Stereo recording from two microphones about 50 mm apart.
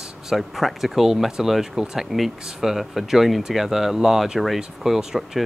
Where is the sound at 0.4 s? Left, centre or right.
Centre.